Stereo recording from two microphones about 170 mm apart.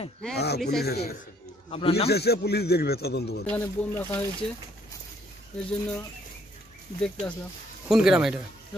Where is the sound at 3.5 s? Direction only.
10° left (ahead or behind).